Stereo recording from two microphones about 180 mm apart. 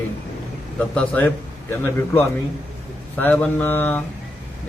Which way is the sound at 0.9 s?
10° left (ahead or behind).